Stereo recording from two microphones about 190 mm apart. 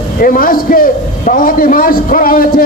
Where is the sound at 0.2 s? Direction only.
50° left (ahead or behind).